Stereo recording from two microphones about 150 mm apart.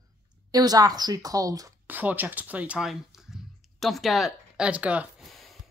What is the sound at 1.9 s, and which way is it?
Speech, 10° right (ahead or behind).